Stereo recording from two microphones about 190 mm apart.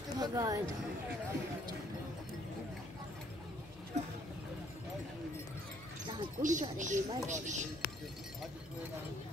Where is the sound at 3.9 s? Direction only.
35° right (ahead or behind).